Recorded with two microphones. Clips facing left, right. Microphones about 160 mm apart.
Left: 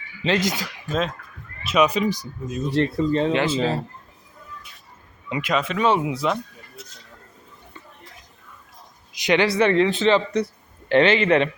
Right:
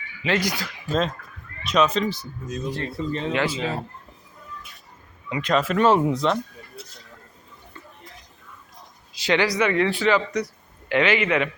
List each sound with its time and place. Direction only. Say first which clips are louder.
0.3 s speech: left 2 dB; 20° left (ahead or behind)
0.9 s speech: right 1 dB; 5° left (ahead or behind)
3.0 s speech: left 5 dB; 35° left (ahead or behind)
3.3 s speech: left 3 dB; 25° left (ahead or behind)
5.4 s speech: right 2 dB; 5° left (ahead or behind)
9.1 s a man's voice: left 2 dB; 20° left (ahead or behind)